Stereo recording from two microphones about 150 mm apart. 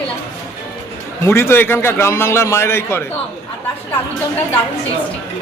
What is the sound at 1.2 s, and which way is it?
A man's voice, 15° left (ahead or behind).